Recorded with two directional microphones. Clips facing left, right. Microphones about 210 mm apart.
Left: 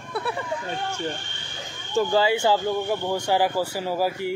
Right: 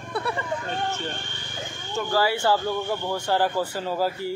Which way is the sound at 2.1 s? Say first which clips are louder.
Even; 20° left (ahead or behind).